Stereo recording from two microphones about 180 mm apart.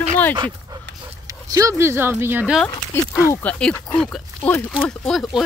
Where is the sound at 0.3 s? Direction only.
25° right (ahead or behind).